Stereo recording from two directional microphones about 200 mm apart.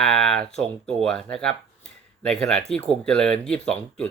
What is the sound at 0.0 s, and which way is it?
Speech, 5° left (ahead or behind).